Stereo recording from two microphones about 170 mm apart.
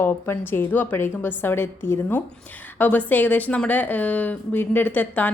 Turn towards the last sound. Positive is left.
turn(degrees=10)  # may be behind; listen again after turning